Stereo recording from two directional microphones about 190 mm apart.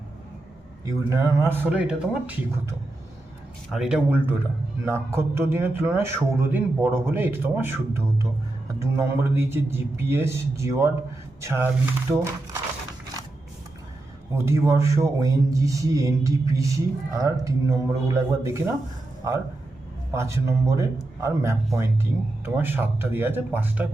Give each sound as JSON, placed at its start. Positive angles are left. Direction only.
{"t": 0.9, "sound": "speech", "side_deg": -15}
{"t": 14.3, "sound": "speech", "side_deg": -15}
{"t": 20.1, "sound": "speech", "side_deg": -15}